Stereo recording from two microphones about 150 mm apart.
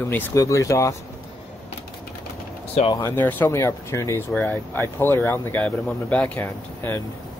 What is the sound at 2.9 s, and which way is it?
Speech, 15° left (ahead or behind).